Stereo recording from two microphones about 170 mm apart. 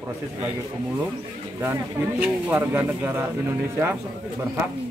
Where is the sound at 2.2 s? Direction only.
10° right (ahead or behind).